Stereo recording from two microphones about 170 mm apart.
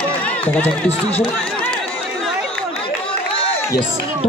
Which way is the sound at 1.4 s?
5° left (ahead or behind).